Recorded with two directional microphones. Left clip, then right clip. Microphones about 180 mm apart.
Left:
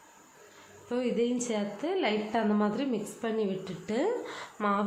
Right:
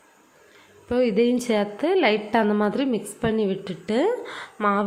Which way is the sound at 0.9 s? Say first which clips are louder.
Right 9 dB; 35° right (ahead or behind).